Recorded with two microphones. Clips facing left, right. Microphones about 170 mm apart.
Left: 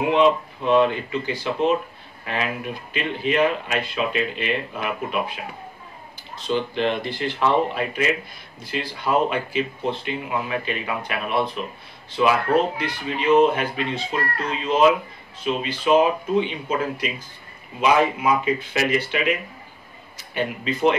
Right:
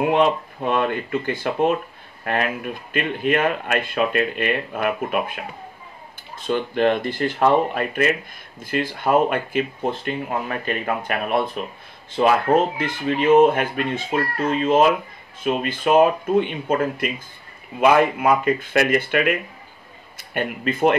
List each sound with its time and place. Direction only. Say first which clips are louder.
0.1 s speech: left 1 dB; 50° right (ahead or behind)